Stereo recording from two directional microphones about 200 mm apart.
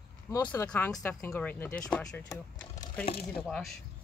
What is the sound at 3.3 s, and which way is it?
Speech, centre (ahead or behind).